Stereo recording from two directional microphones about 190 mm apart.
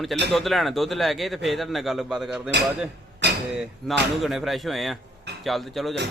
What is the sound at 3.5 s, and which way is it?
A man's voice, 5° right (ahead or behind).